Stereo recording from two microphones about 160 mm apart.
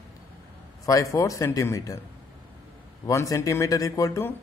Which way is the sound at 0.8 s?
20° left (ahead or behind).